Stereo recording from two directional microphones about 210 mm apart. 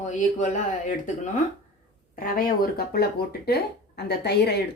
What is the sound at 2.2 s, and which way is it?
A woman's voice, 40° left (ahead or behind).